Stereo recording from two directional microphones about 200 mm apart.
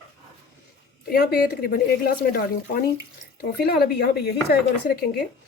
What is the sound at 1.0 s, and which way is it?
Speech, 50° left (ahead or behind).